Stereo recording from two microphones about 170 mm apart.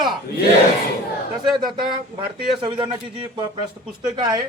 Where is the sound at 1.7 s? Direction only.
30° right (ahead or behind).